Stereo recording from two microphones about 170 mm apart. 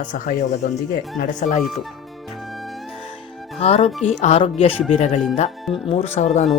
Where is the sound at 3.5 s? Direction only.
40° left (ahead or behind).